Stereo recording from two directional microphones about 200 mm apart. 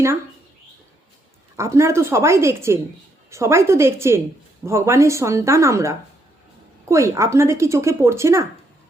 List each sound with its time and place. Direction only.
1.5 s speech: 15° right (ahead or behind)